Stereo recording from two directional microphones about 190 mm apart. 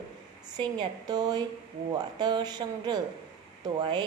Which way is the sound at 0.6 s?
20° right (ahead or behind).